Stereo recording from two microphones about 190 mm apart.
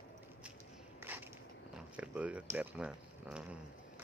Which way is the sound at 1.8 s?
5° right (ahead or behind).